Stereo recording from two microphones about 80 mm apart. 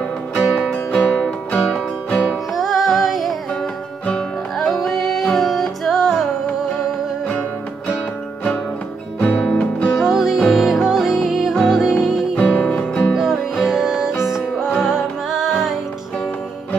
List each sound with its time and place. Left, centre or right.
1.1 s music: centre
2.1 s music: centre
4.6 s music: centre
9.2 s guitar: centre
9.9 s music: centre
12.4 s music: centre
13.1 s music: centre